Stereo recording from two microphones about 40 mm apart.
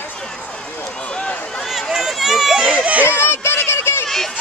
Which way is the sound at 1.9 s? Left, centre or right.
Centre.